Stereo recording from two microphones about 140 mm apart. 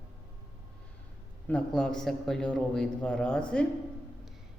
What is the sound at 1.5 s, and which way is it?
A man's voice, 5° left (ahead or behind).